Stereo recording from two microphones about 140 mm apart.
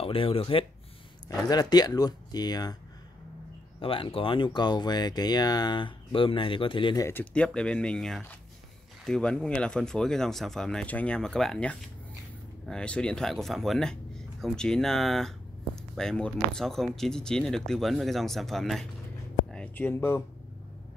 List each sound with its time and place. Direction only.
0.0 s speech: 40° left (ahead or behind)
1.5 s speech: 30° left (ahead or behind)
3.8 s speech: 40° left (ahead or behind)
7.0 s speech: 15° left (ahead or behind)
7.3 s speech: 5° left (ahead or behind)